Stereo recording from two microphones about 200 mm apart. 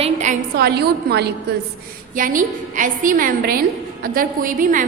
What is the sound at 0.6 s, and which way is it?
Speech, 55° right (ahead or behind).